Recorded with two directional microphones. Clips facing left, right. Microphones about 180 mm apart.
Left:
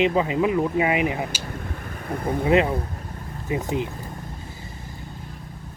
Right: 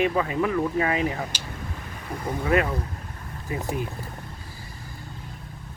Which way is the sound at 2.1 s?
55° left (ahead or behind).